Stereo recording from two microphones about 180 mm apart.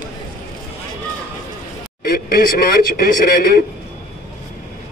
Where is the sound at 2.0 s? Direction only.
55° left (ahead or behind).